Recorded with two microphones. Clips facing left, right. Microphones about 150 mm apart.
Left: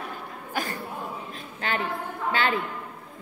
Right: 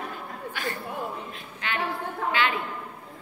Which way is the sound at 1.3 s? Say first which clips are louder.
Left 4 dB; 35° left (ahead or behind).